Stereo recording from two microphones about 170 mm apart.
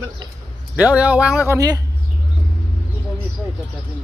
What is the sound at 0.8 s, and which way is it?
Speech, 10° right (ahead or behind).